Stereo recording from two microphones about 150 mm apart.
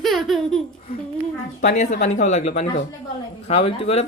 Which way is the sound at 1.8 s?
50° left (ahead or behind).